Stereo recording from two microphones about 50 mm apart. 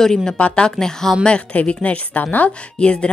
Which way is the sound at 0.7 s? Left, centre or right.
Centre.